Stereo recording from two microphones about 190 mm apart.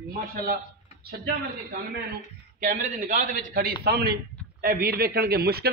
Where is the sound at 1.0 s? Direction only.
55° right (ahead or behind).